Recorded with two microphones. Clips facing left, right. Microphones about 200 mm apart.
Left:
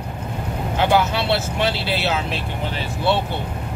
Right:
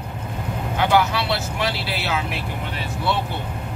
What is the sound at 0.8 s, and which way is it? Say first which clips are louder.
Speech: left 1 dB; 25° left (ahead or behind).